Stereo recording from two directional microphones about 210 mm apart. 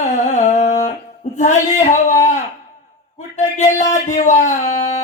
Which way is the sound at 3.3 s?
35° left (ahead or behind).